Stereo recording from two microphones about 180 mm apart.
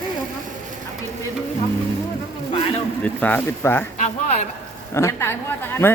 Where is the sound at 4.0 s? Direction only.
35° left (ahead or behind).